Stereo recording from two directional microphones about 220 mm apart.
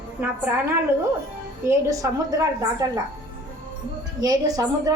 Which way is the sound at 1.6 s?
15° right (ahead or behind).